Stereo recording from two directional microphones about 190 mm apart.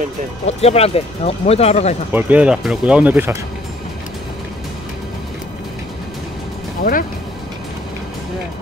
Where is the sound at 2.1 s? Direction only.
5° right (ahead or behind).